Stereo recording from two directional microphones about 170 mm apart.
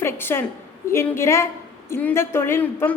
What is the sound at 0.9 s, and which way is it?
A woman's voice, 15° left (ahead or behind).